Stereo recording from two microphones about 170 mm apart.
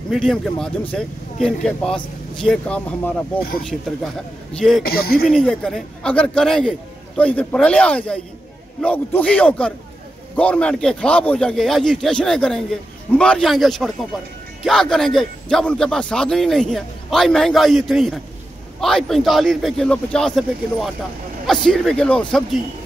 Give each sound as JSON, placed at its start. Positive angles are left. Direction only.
{"t": 0.1, "sound": "a man's voice", "side_deg": 5}
{"t": 4.6, "sound": "a man's voice", "side_deg": 0}
{"t": 4.8, "sound": "speech", "side_deg": 65}
{"t": 5.3, "sound": "a man's voice", "side_deg": 5}